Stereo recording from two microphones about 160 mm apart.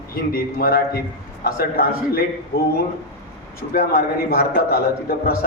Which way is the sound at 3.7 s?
70° left (ahead or behind).